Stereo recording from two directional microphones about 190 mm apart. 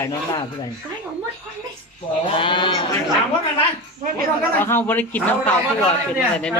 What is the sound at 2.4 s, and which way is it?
Speech, 25° left (ahead or behind).